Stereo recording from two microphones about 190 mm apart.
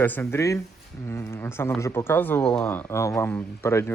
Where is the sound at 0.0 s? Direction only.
10° left (ahead or behind).